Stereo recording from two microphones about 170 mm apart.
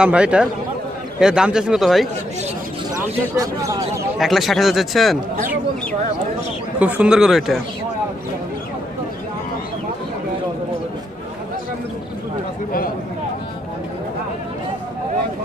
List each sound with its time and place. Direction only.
0.0 s speech: 5° right (ahead or behind)
3.3 s a man's voice: 20° right (ahead or behind)
4.2 s speech: centre (ahead or behind)
6.8 s speech: 5° right (ahead or behind)